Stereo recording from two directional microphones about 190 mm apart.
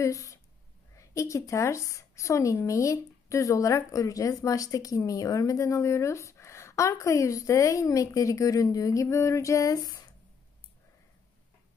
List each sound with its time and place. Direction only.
0.0 s speech: 15° left (ahead or behind)